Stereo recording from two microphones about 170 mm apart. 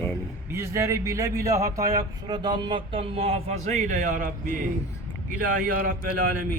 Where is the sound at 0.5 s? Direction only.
15° right (ahead or behind); by 5.9 s 55° right (ahead or behind).